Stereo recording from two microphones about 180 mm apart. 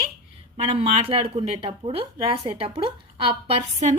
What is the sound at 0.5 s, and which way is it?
Speech, 35° right (ahead or behind).